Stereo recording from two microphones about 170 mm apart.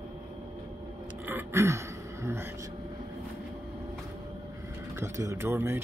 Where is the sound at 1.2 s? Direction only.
15° right (ahead or behind).